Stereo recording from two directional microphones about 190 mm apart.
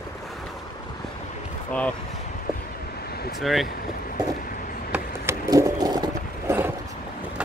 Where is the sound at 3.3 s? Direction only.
Centre (ahead or behind).